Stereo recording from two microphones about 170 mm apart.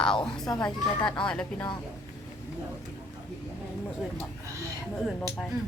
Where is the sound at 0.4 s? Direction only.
20° left (ahead or behind).